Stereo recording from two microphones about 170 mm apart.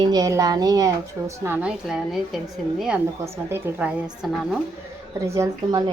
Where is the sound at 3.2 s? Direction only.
15° right (ahead or behind).